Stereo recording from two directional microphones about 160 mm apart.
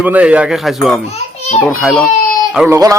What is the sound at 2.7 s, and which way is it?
Speech, 20° right (ahead or behind).